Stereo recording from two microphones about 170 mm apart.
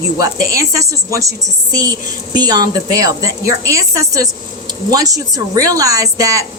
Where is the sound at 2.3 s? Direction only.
25° right (ahead or behind).